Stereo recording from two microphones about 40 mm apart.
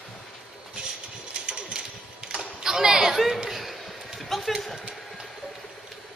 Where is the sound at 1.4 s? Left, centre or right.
Right; by 4.6 s centre.